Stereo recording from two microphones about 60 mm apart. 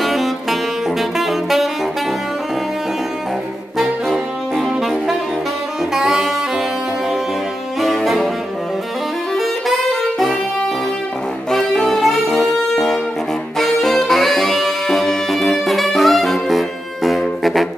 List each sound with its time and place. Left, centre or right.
0.0 s saxophone: centre
3.7 s saxophone: centre
7.8 s music: centre
9.3 s saxophone: centre
11.5 s music: centre